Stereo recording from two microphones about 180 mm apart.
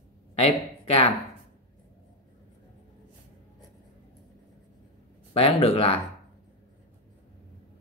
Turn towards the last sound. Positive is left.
turn(degrees=30)  # may be behind; listen again after turning